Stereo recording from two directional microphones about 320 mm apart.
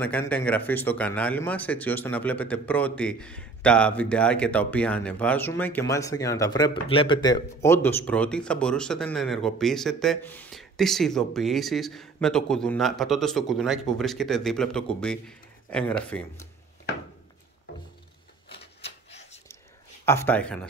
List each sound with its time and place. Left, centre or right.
0.0 s speech: centre
18.8 s a sound: centre
20.1 s speech: centre